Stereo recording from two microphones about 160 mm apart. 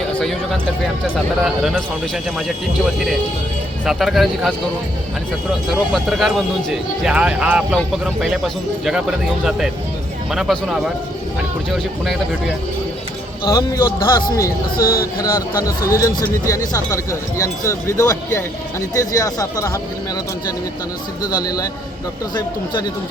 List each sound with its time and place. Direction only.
0.2 s speech: 5° left (ahead or behind)
3.8 s speech: centre (ahead or behind)
5.9 s speech: centre (ahead or behind)
13.4 s speech: 25° left (ahead or behind)
14.8 s speech: 65° left (ahead or behind)
15.2 s speech: 20° left (ahead or behind)
21.2 s speech: 25° left (ahead or behind)